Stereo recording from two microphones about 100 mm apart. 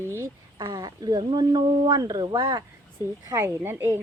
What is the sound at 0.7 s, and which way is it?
Speech, 40° right (ahead or behind).